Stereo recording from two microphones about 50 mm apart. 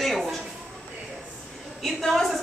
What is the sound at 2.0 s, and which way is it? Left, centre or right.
Speech, centre.